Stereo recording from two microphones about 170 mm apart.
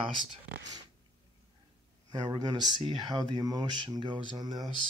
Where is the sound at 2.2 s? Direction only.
25° right (ahead or behind).